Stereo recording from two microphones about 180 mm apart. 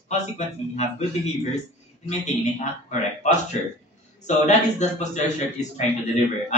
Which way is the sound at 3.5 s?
35° left (ahead or behind).